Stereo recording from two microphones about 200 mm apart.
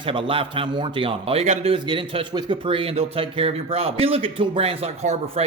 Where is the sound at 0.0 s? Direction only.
25° right (ahead or behind).